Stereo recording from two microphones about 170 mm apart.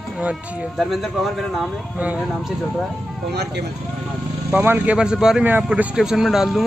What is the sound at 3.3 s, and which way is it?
Speech, 75° right (ahead or behind).